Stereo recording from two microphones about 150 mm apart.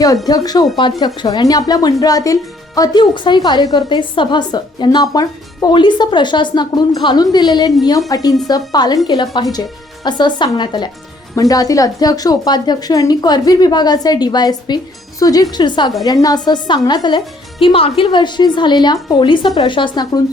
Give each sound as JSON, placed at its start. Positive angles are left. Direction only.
{"t": 0.3, "sound": "a woman's voice", "side_deg": 25}